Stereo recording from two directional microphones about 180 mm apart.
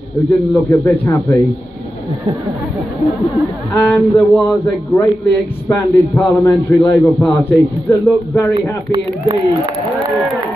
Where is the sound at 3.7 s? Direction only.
15° left (ahead or behind).